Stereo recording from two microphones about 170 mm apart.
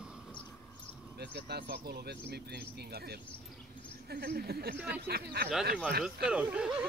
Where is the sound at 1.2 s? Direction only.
75° right (ahead or behind).